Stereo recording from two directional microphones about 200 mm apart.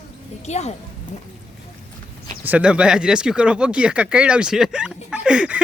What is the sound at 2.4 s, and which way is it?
Speech, 5° right (ahead or behind).